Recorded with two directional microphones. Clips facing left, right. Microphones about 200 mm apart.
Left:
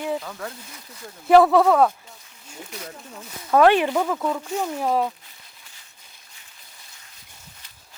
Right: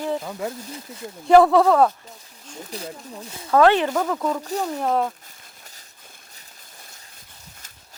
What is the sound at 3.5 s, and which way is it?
Speech, 10° left (ahead or behind).